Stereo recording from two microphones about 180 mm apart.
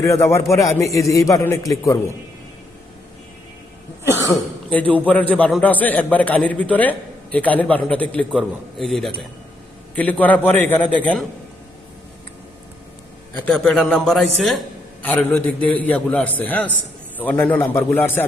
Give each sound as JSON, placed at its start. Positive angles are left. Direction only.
{"t": 0.0, "sound": "a man's voice", "side_deg": 15}
{"t": 4.3, "sound": "a man's voice", "side_deg": 10}
{"t": 13.4, "sound": "a man's voice", "side_deg": 0}